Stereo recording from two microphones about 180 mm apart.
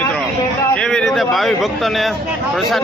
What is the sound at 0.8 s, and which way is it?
A man's voice, 5° left (ahead or behind).